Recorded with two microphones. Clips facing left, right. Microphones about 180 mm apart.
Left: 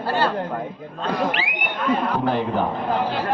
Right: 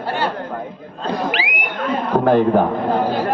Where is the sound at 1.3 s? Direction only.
90° right.